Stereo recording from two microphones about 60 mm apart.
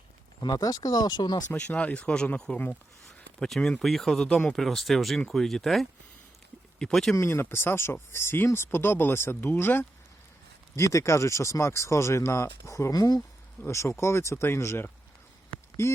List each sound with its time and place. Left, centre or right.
0.5 s speech: left
1.5 s speech: centre
3.4 s speech: centre
7.2 s speech: left
10.8 s speech: left
13.7 s speech: left